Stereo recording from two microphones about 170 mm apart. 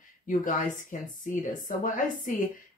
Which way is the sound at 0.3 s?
55° left (ahead or behind).